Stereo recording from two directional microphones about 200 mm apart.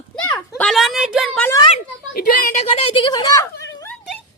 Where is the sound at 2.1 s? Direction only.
45° left (ahead or behind).